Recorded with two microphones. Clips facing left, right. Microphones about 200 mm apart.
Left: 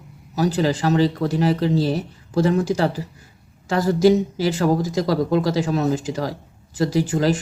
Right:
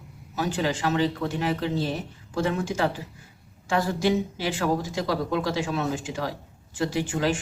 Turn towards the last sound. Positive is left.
turn(degrees=40)  # may be behind; listen again after turning